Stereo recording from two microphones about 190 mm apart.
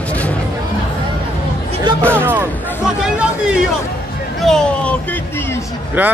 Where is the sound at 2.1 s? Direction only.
10° right (ahead or behind).